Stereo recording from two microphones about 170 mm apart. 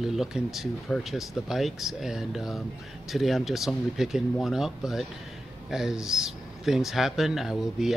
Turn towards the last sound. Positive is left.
turn(degrees=0)  # may be behind; listen again after turning